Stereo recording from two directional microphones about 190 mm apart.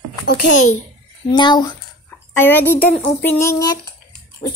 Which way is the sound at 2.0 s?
10° left (ahead or behind).